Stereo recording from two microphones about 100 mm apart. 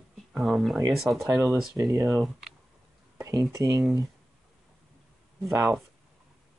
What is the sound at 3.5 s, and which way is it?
Speech, 30° right (ahead or behind).